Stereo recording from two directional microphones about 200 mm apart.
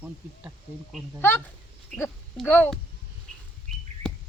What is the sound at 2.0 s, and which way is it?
Speech, 10° left (ahead or behind).